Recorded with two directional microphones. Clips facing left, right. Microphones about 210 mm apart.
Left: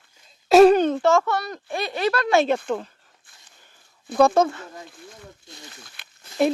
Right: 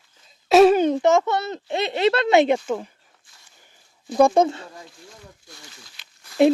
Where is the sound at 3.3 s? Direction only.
55° left (ahead or behind).